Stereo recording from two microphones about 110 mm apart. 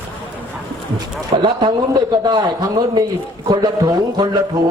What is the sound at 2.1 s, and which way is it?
Speech, 40° right (ahead or behind).